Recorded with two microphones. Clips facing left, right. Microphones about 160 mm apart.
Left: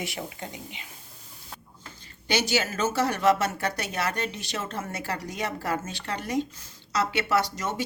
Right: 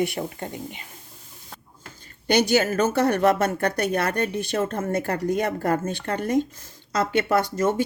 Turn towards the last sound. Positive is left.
turn(degrees=-50)  # may be behind; listen again after turning